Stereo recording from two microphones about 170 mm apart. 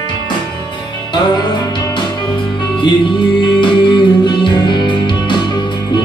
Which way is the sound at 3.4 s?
25° left (ahead or behind).